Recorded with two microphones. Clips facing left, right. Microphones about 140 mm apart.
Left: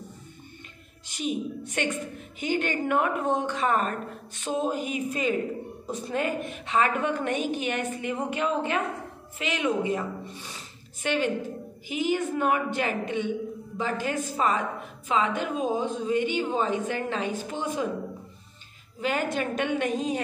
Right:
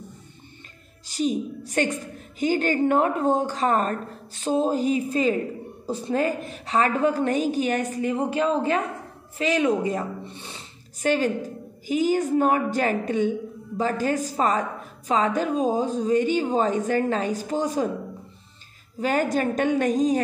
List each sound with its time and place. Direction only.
1.0 s a woman's voice: 35° right (ahead or behind)
18.9 s a woman's voice: 40° right (ahead or behind)